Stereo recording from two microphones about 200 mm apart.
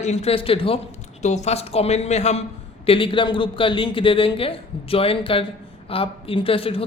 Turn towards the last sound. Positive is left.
turn(degrees=30)  # may be behind; listen again after turning